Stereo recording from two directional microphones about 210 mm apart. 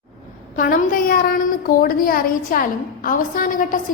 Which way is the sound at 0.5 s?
40° left (ahead or behind).